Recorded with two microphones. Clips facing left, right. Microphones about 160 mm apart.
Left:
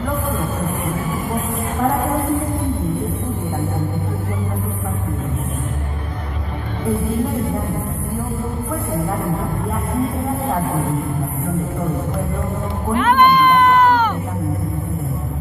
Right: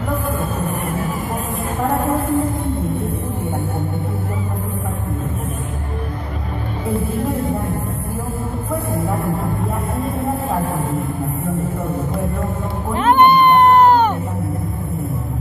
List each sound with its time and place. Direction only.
12.9 s music: 30° right (ahead or behind)